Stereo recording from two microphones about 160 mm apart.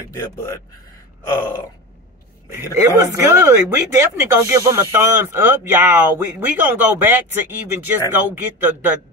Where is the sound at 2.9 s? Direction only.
15° right (ahead or behind).